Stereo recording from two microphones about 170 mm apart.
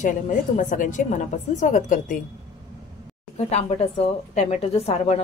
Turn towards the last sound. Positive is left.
turn(degrees=35)  # may be behind; listen again after turning